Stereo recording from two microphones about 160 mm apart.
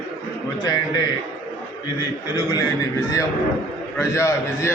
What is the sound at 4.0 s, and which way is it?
Speech, 15° left (ahead or behind).